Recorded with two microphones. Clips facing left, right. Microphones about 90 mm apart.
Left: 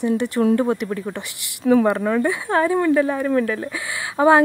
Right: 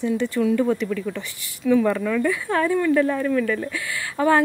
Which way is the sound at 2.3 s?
25° left (ahead or behind).